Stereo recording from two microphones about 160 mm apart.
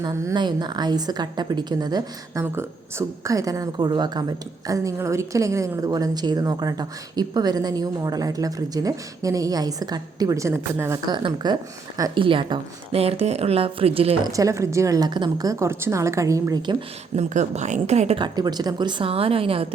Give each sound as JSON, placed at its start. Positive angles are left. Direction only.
{"t": 0.0, "sound": "a woman's voice", "side_deg": -20}
{"t": 14.3, "sound": "a woman's voice", "side_deg": -20}
{"t": 17.2, "sound": "speech", "side_deg": -45}
{"t": 18.2, "sound": "a woman's voice", "side_deg": -25}